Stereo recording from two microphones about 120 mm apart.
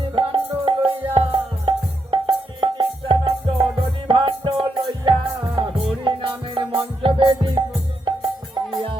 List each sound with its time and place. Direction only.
0.2 s music: 50° right (ahead or behind)